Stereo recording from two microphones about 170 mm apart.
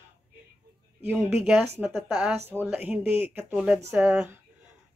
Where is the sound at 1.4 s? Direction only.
10° right (ahead or behind).